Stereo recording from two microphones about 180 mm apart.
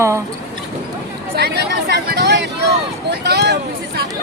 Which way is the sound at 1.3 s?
65° right (ahead or behind).